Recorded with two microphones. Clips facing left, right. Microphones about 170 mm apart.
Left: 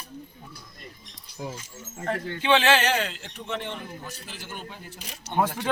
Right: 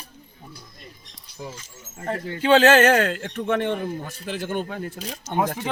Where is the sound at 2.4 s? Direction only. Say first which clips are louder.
Right 7 dB; 40° right (ahead or behind); by 4.8 s 55° right (ahead or behind).